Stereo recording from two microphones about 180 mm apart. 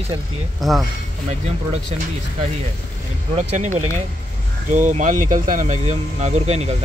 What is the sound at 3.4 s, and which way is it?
Speech, 40° right (ahead or behind).